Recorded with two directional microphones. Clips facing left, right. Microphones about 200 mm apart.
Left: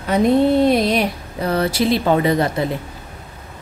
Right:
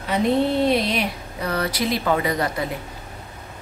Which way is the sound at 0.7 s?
45° left (ahead or behind).